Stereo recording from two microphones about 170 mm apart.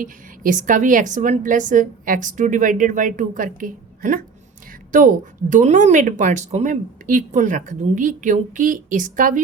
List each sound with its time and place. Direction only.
0.0 s a woman's voice: 50° right (ahead or behind)